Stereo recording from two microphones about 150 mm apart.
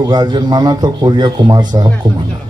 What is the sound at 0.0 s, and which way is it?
A man's voice, 30° right (ahead or behind).